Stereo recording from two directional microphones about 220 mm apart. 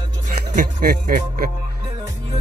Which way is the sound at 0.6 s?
40° right (ahead or behind).